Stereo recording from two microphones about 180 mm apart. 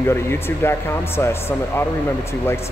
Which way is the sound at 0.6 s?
15° left (ahead or behind).